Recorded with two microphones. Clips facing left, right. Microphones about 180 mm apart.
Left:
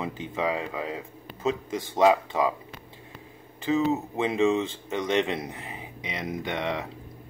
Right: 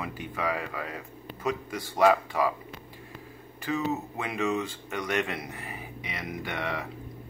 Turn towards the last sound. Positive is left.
turn(degrees=20)  # may be behind; listen again after turning